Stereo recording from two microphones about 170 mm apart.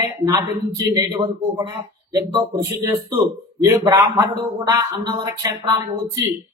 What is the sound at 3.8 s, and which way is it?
A man's voice, 20° right (ahead or behind).